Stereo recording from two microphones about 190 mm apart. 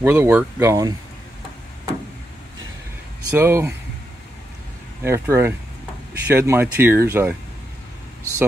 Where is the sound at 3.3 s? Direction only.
15° right (ahead or behind).